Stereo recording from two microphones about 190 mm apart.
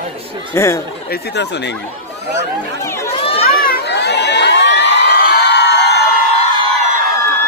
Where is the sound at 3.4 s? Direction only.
50° left (ahead or behind).